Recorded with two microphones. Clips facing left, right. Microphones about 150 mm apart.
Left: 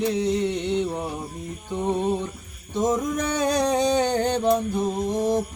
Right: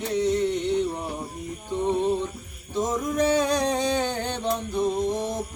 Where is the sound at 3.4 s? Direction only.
45° left (ahead or behind).